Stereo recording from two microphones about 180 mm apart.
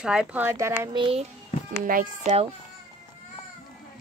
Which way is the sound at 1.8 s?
50° right (ahead or behind).